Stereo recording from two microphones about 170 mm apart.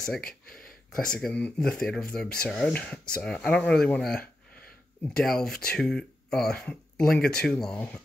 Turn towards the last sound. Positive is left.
turn(degrees=5)  # may be behind; listen again after turning